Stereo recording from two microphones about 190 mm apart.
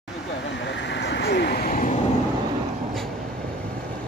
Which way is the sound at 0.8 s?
65° left (ahead or behind).